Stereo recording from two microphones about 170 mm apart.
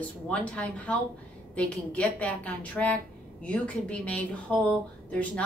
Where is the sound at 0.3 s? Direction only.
5° left (ahead or behind).